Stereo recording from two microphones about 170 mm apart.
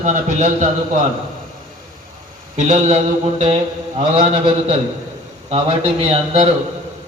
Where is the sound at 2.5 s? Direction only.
45° right (ahead or behind).